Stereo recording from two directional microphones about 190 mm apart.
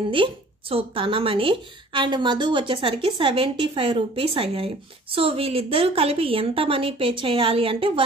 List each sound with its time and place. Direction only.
0.1 s speech: 30° right (ahead or behind)